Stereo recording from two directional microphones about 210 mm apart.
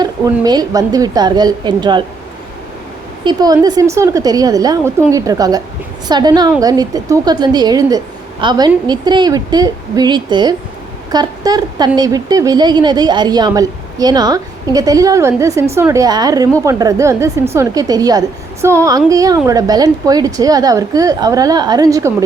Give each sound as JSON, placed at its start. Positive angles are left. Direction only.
{"t": 0.0, "sound": "a woman's voice", "side_deg": -20}
{"t": 3.2, "sound": "a woman's voice", "side_deg": -20}